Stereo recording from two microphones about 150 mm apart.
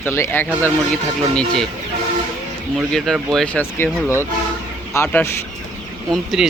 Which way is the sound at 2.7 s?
Centre (ahead or behind).